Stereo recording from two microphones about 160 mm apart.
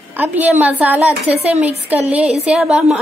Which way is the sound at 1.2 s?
40° right (ahead or behind).